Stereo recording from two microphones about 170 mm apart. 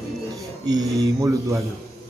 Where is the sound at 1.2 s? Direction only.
15° right (ahead or behind).